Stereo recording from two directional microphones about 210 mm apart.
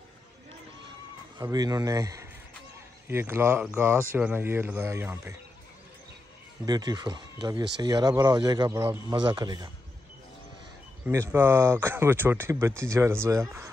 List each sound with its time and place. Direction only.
1.4 s speech: 20° right (ahead or behind)
6.6 s speech: 20° right (ahead or behind)
11.1 s speech: 10° right (ahead or behind)